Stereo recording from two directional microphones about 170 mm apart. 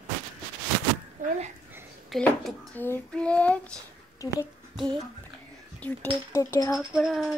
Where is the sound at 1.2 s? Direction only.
55° right (ahead or behind).